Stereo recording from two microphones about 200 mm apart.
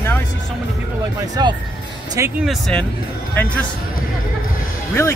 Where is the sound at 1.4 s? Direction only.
20° right (ahead or behind).